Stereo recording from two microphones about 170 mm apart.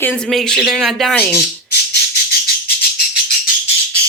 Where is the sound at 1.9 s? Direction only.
65° left (ahead or behind).